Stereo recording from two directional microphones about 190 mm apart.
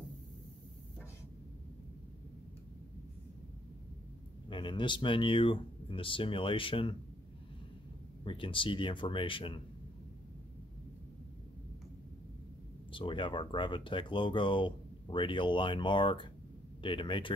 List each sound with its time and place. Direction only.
4.5 s speech: 25° left (ahead or behind)
8.2 s speech: 25° left (ahead or behind)
12.9 s speech: 25° left (ahead or behind)